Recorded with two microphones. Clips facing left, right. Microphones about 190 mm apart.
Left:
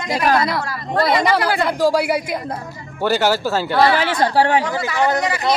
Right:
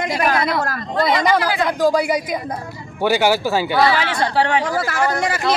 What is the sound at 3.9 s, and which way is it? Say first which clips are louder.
Speech: left 2 dB; 40° left (ahead or behind).